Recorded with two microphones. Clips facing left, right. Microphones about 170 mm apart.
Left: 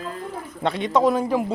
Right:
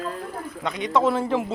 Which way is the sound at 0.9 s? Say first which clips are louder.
Left 2 dB; 15° left (ahead or behind).